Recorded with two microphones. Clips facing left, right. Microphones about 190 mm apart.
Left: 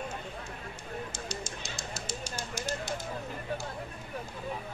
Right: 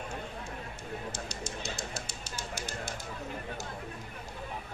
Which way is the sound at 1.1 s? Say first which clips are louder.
Even; 65° right (ahead or behind).